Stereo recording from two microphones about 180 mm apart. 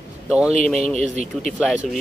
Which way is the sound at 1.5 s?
Centre (ahead or behind).